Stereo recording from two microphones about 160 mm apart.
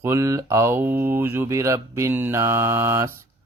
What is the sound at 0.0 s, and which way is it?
Speech, 20° right (ahead or behind).